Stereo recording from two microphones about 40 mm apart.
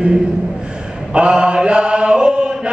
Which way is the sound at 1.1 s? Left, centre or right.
Right.